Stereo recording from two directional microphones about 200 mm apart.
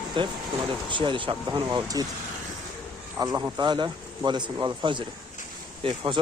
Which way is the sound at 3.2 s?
15° right (ahead or behind).